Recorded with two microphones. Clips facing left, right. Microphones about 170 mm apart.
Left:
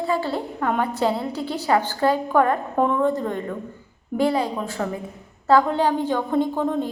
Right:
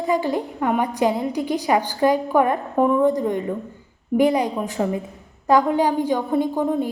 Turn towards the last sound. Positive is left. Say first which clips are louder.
# right 1 dB
turn(degrees=-10)  # may be behind; listen again after turning